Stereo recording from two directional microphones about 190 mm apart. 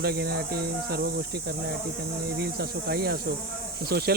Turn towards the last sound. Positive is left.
turn(degrees=-55)  # may be behind; listen again after turning